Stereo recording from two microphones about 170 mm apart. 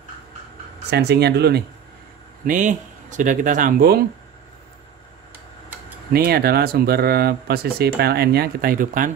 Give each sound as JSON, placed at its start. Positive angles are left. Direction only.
{"t": 0.8, "sound": "speech", "side_deg": -75}
{"t": 2.4, "sound": "speech", "side_deg": -50}
{"t": 6.1, "sound": "speech", "side_deg": -65}